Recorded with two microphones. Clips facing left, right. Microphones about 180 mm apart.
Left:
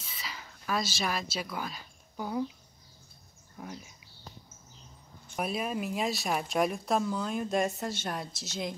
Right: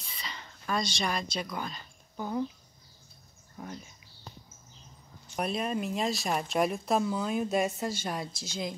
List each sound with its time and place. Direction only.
0.0 s a sound: 5° left (ahead or behind)
3.5 s speech: 5° left (ahead or behind)
5.3 s speech: 5° left (ahead or behind)